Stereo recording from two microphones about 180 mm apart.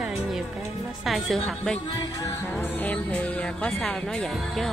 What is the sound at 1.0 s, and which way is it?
Speech, centre (ahead or behind).